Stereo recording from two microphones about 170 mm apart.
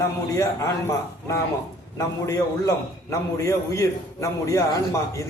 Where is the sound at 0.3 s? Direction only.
15° left (ahead or behind).